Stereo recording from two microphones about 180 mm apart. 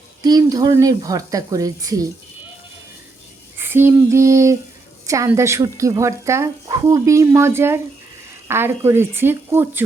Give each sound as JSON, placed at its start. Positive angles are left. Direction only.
{"t": 0.2, "sound": "speech", "side_deg": -20}
{"t": 3.6, "sound": "speech", "side_deg": -10}